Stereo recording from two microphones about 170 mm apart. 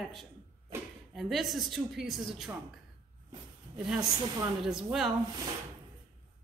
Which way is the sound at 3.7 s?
5° right (ahead or behind).